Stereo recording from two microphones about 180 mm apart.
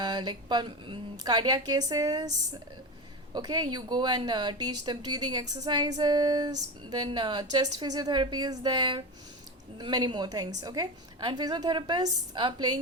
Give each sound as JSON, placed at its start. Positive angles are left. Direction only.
{"t": 0.0, "sound": "a sound", "side_deg": -25}
{"t": 1.2, "sound": "speech", "side_deg": -20}
{"t": 3.3, "sound": "speech", "side_deg": -25}